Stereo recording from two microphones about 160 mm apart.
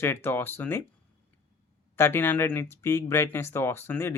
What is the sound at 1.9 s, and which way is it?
Speech, 15° left (ahead or behind).